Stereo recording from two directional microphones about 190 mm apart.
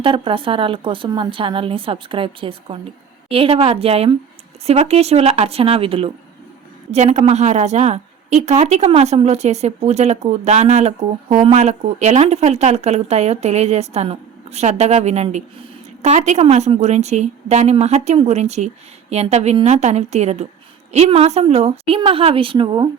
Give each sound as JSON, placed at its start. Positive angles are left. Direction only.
{"t": 0.0, "sound": "speech", "side_deg": -30}